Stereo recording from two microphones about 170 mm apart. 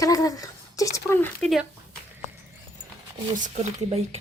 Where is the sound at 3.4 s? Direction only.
40° right (ahead or behind).